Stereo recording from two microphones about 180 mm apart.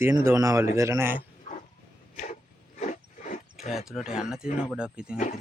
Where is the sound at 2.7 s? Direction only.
45° left (ahead or behind).